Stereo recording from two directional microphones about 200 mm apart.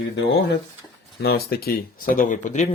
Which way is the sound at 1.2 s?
50° left (ahead or behind).